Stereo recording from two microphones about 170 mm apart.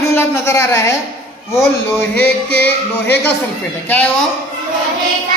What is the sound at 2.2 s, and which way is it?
Music, 75° left (ahead or behind).